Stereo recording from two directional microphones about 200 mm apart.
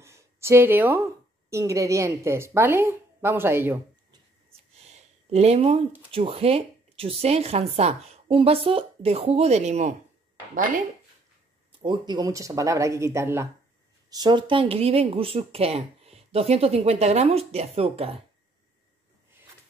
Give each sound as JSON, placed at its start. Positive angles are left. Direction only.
{"t": 0.0, "sound": "a sound", "side_deg": -15}
{"t": 1.5, "sound": "a woman's voice", "side_deg": -15}
{"t": 4.7, "sound": "speech", "side_deg": -35}
{"t": 11.8, "sound": "a woman's voice", "side_deg": -20}